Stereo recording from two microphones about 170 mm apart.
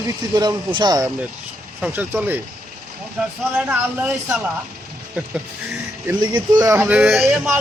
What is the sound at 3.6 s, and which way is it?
Speech, 10° right (ahead or behind).